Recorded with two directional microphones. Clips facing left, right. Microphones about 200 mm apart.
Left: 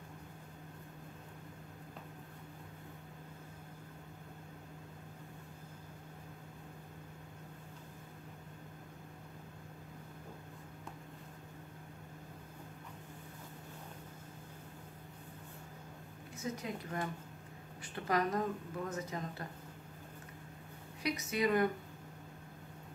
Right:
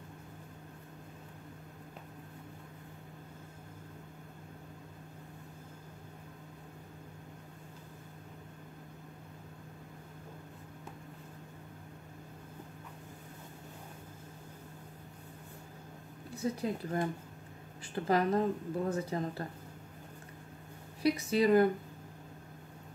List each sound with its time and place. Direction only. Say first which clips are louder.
16.3 s speech: right 6 dB; 35° right (ahead or behind)
21.0 s speech: right 6 dB; 30° right (ahead or behind)